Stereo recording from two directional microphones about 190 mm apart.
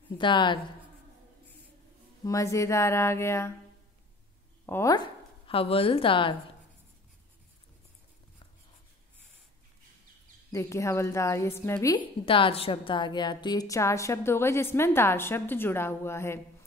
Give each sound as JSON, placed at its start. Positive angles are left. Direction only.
{"t": 0.2, "sound": "speech", "side_deg": 25}
{"t": 2.2, "sound": "a woman's voice", "side_deg": 15}
{"t": 4.6, "sound": "a woman's voice", "side_deg": 15}
{"t": 4.9, "sound": "speech", "side_deg": 25}
{"t": 10.5, "sound": "a woman's voice", "side_deg": 15}
{"t": 12.3, "sound": "a woman's voice", "side_deg": 30}